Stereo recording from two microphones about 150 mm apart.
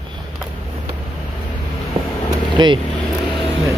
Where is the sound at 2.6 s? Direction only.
30° right (ahead or behind).